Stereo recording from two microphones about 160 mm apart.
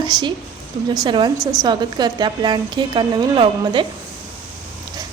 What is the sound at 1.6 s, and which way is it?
Speech, 25° right (ahead or behind).